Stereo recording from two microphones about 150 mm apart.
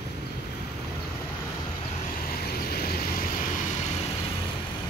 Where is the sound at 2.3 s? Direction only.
85° left.